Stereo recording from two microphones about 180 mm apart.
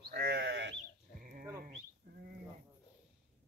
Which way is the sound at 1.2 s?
50° right (ahead or behind).